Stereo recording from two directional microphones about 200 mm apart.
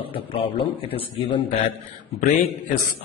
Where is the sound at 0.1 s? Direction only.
30° left (ahead or behind).